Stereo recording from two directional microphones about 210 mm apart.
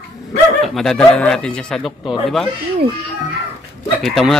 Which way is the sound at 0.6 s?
Centre (ahead or behind).